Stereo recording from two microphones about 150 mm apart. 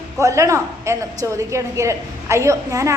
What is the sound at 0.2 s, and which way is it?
A woman's voice, 20° right (ahead or behind).